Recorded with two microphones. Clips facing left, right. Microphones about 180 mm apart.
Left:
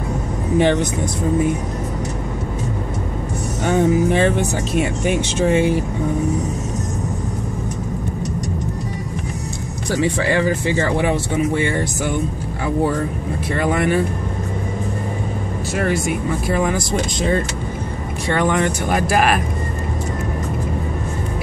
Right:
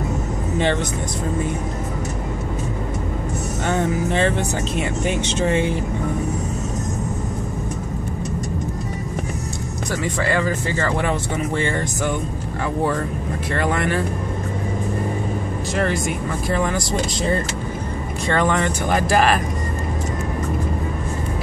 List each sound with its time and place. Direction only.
3.6 s speech: 10° left (ahead or behind)
10.8 s speech: 15° left (ahead or behind)
13.5 s speech: 10° left (ahead or behind)
15.7 s speech: 5° left (ahead or behind)
18.3 s speech: 10° left (ahead or behind)